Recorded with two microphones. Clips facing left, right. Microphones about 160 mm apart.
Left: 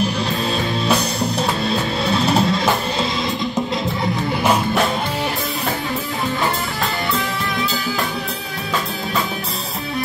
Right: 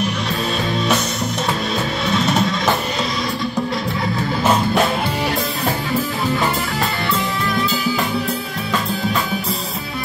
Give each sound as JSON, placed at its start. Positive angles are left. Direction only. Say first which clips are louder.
{"t": 0.8, "sound": "music", "louder": "left 1 dB", "side_deg": 35}